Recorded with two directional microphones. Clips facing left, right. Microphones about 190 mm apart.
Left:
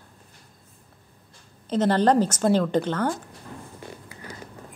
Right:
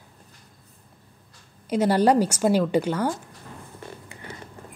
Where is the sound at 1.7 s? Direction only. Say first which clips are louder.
Right 1 dB; 10° right (ahead or behind).